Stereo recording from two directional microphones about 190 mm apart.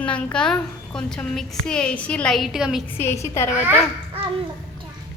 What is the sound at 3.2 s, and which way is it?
Speech, 15° left (ahead or behind).